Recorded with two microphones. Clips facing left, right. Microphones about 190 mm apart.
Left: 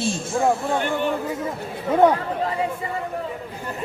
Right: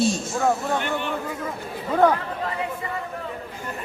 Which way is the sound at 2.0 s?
20° left (ahead or behind).